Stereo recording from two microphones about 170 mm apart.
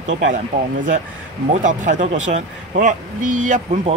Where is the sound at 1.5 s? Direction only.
45° right (ahead or behind).